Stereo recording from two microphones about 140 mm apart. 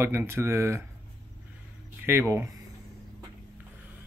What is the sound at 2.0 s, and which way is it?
Speech, 15° right (ahead or behind).